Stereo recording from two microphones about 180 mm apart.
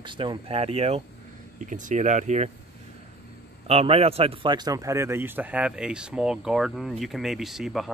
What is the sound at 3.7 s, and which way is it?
Speech, 35° right (ahead or behind).